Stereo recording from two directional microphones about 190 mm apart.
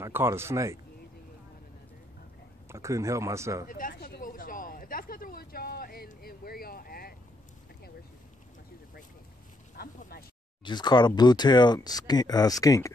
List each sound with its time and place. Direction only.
0.0 s speech: 15° right (ahead or behind)
2.7 s speech: 15° right (ahead or behind)
3.6 s speech: 45° left (ahead or behind)
3.9 s a sound: 55° left (ahead or behind)
9.8 s a sound: 50° left (ahead or behind)
10.6 s speech: 25° left (ahead or behind)